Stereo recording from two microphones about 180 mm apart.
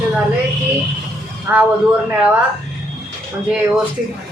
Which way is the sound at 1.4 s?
5° right (ahead or behind).